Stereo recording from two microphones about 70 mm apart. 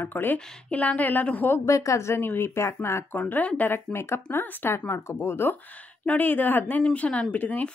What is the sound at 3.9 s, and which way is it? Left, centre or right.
Speech, left.